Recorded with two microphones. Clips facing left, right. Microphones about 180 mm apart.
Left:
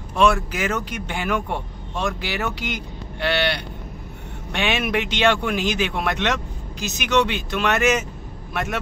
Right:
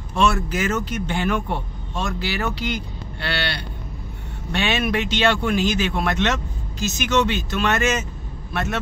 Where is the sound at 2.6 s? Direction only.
15° left (ahead or behind).